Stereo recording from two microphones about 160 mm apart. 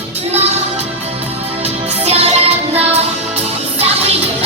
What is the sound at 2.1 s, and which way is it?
Music, 40° right (ahead or behind).